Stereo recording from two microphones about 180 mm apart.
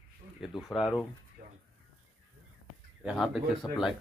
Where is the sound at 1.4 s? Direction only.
50° right (ahead or behind).